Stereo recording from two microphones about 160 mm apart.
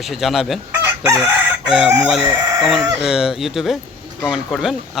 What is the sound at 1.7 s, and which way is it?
A man's voice, 5° right (ahead or behind).